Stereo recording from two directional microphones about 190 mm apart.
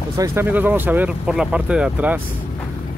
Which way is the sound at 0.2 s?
10° right (ahead or behind).